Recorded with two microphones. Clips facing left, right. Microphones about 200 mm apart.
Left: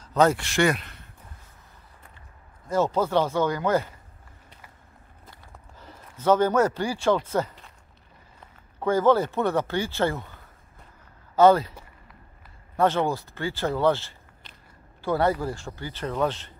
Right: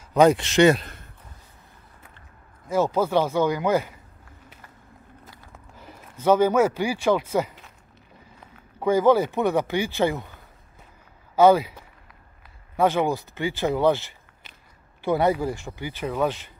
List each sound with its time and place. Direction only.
0.0 s speech: 15° right (ahead or behind)
0.7 s speech: 40° right (ahead or behind)
2.7 s speech: 10° right (ahead or behind)
5.3 s a sound: 5° right (ahead or behind)
5.8 s speech: 15° right (ahead or behind)
12.7 s speech: 10° right (ahead or behind)